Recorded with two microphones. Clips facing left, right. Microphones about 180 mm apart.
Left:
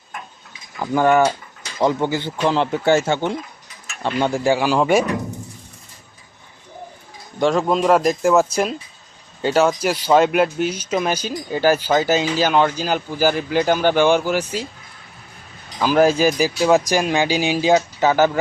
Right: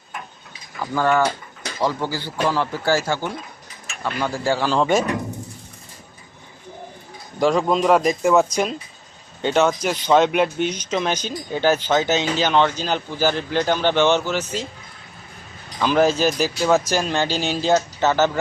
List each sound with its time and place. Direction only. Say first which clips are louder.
0.8 s speech: left 4 dB; 15° left (ahead or behind)
7.3 s a man's voice: left 1 dB; centre (ahead or behind)
15.8 s speech: left 2 dB; 5° left (ahead or behind)